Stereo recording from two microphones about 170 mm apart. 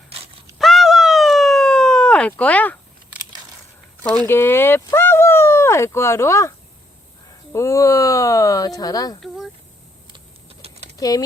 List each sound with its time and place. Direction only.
0.6 s a sound: centre (ahead or behind)
4.3 s speech: 15° left (ahead or behind)
7.5 s speech: 15° left (ahead or behind)
9.2 s a sound: centre (ahead or behind)
10.1 s typing: 35° right (ahead or behind)
10.9 s speech: 20° left (ahead or behind)